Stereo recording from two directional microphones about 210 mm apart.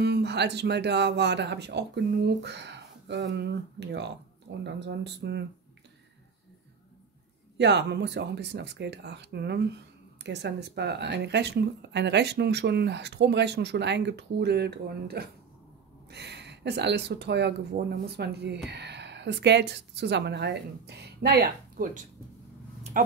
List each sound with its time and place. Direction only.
0.0 s speech: 55° right (ahead or behind)
7.5 s a woman's voice: 55° right (ahead or behind)